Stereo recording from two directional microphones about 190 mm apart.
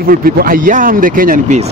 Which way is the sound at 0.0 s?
50° right (ahead or behind).